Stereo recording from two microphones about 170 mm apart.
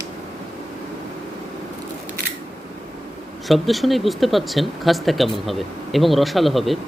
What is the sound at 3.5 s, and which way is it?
Speech, centre (ahead or behind).